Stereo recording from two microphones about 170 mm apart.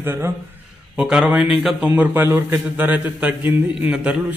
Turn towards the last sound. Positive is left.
turn(degrees=-10)  # may be behind; listen again after turning